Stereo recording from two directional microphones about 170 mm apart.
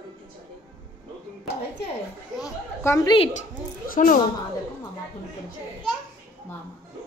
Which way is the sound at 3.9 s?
55° left (ahead or behind).